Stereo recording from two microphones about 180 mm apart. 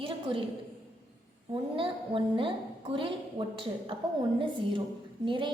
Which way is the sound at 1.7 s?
30° right (ahead or behind).